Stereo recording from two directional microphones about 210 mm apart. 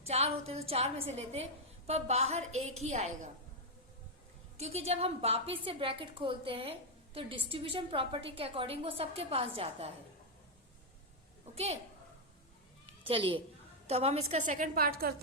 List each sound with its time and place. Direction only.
0.1 s a woman's voice: 30° right (ahead or behind)
4.5 s a woman's voice: 30° right (ahead or behind)
11.5 s a woman's voice: 30° right (ahead or behind)
13.1 s a woman's voice: 25° right (ahead or behind)
14.6 s a woman's voice: 45° right (ahead or behind)